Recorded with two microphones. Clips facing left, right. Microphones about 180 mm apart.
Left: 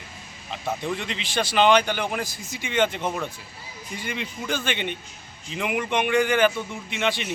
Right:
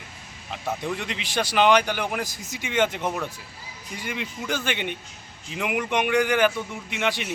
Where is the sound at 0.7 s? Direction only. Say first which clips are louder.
Left 1 dB; 5° right (ahead or behind).